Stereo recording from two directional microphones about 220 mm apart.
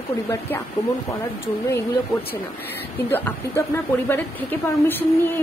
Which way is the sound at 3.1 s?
10° left (ahead or behind).